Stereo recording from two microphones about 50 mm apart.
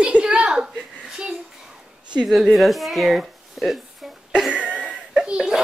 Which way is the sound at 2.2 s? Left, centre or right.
Centre.